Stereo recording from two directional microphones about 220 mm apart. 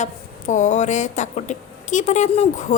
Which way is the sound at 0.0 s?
35° left (ahead or behind).